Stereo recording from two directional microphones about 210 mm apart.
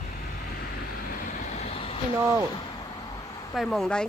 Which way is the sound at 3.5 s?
Centre (ahead or behind).